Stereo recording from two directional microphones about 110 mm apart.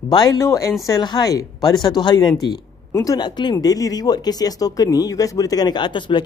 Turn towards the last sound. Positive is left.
turn(degrees=45)  # may be behind; listen again after turning